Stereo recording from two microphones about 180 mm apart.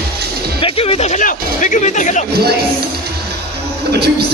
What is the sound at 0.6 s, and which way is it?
Music, 35° left (ahead or behind).